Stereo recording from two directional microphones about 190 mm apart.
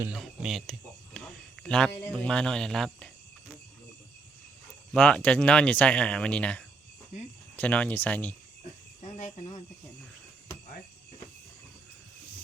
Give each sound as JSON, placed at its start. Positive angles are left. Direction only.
{"t": 0.0, "sound": "speech", "side_deg": -5}
{"t": 4.9, "sound": "speech", "side_deg": 5}
{"t": 9.0, "sound": "cricket", "side_deg": 40}